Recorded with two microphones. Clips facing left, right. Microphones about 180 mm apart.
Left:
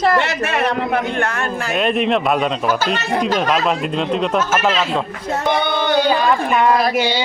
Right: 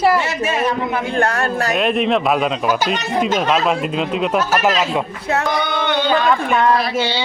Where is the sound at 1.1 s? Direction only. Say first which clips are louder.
Right 3 dB; 35° right (ahead or behind).